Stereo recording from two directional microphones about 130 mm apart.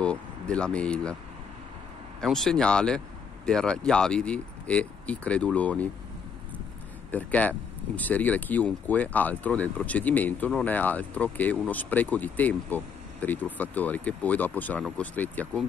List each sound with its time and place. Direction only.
0.0 s speech: 10° left (ahead or behind)
2.1 s speech: centre (ahead or behind)
7.1 s speech: 10° left (ahead or behind)